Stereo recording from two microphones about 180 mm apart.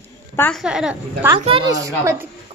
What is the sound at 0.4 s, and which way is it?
Speech, centre (ahead or behind).